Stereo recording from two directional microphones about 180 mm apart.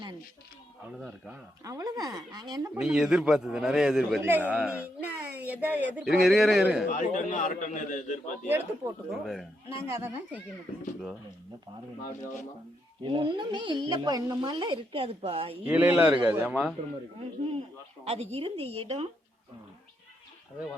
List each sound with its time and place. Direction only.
0.9 s speech: 5° right (ahead or behind); by 2.7 s 25° right (ahead or behind)
2.7 s a man's voice: 5° right (ahead or behind)
6.8 s a man's voice: 45° left (ahead or behind)
8.4 s a man's voice: 10° right (ahead or behind)
9.0 s a man's voice: centre (ahead or behind)
9.8 s a man's voice: 15° right (ahead or behind)
13.0 s speech: 25° right (ahead or behind)
15.6 s a man's voice: 10° right (ahead or behind)
18.0 s a woman's voice: 35° right (ahead or behind)